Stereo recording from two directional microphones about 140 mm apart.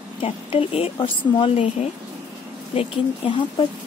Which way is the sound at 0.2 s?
40° left (ahead or behind).